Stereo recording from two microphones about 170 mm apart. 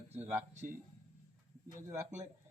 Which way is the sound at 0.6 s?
50° right (ahead or behind).